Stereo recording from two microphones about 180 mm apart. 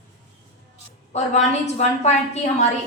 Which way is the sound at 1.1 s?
40° left (ahead or behind).